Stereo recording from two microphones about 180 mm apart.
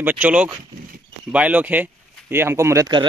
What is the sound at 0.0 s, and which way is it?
Speech, 5° right (ahead or behind).